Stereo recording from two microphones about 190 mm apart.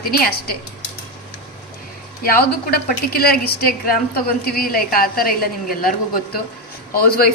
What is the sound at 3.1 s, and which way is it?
A woman's voice, 55° left (ahead or behind).